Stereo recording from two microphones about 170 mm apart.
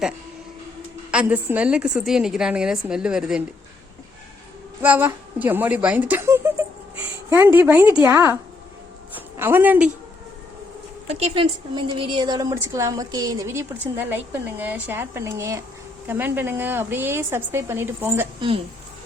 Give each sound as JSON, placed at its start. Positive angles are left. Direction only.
{"t": 1.1, "sound": "a woman's voice", "side_deg": -10}
{"t": 4.8, "sound": "a woman's voice", "side_deg": -10}
{"t": 9.4, "sound": "a woman's voice", "side_deg": -10}
{"t": 11.1, "sound": "a woman's voice", "side_deg": -35}
{"t": 18.3, "sound": "speech", "side_deg": -30}